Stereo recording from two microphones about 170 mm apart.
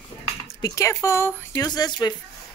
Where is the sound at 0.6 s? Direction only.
20° left (ahead or behind).